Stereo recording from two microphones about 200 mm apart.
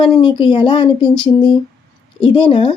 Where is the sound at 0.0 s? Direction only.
25° left (ahead or behind).